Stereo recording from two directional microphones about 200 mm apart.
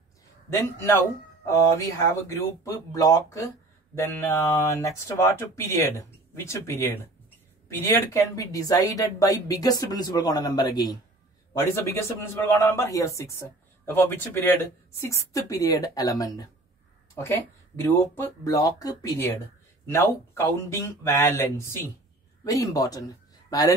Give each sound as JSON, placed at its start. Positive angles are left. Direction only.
{"t": 0.5, "sound": "a man's voice", "side_deg": 10}